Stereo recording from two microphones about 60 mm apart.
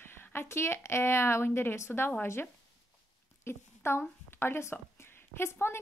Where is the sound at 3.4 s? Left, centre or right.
Left.